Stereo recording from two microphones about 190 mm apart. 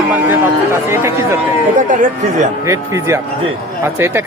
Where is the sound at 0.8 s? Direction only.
15° right (ahead or behind).